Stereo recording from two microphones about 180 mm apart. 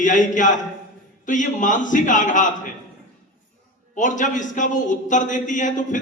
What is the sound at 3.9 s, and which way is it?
A man's voice, 45° left (ahead or behind).